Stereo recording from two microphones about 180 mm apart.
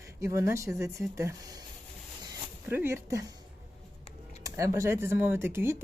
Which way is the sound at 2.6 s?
15° right (ahead or behind).